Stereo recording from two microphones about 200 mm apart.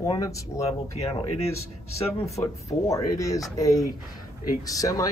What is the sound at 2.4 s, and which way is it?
Speech, 15° left (ahead or behind).